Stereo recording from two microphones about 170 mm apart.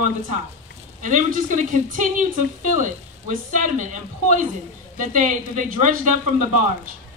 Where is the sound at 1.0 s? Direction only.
50° right (ahead or behind).